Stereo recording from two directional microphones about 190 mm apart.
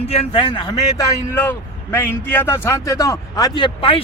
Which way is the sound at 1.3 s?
10° left (ahead or behind).